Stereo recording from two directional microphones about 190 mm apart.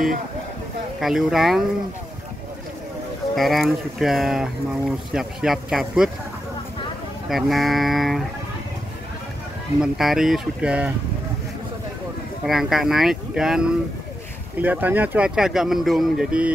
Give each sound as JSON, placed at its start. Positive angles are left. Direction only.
{"t": 0.9, "sound": "speech", "side_deg": 0}
{"t": 3.3, "sound": "speech", "side_deg": 0}
{"t": 7.2, "sound": "speech", "side_deg": 0}
{"t": 9.8, "sound": "speech", "side_deg": 0}
{"t": 12.4, "sound": "speech", "side_deg": 0}